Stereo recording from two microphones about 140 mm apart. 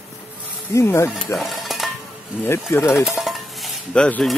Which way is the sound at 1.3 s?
Centre (ahead or behind).